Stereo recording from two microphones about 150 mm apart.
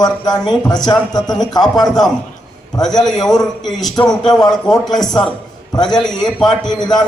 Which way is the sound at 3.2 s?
5° left (ahead or behind).